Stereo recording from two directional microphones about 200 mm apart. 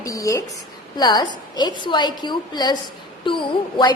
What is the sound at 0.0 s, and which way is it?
A woman's voice, 15° left (ahead or behind).